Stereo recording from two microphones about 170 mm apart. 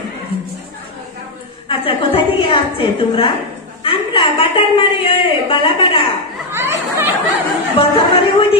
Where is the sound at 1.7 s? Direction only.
30° left (ahead or behind).